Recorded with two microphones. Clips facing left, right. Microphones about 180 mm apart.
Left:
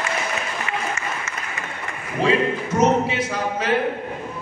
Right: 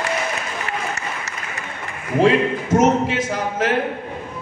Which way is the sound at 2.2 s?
50° right (ahead or behind).